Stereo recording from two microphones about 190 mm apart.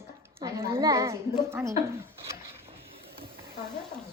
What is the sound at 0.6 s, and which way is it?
A woman's voice, 20° right (ahead or behind).